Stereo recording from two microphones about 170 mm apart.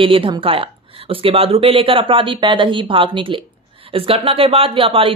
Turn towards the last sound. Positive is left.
turn(degrees=-30)  # may be behind; listen again after turning